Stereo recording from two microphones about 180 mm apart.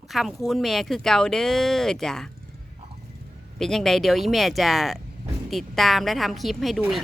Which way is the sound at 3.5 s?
Centre (ahead or behind).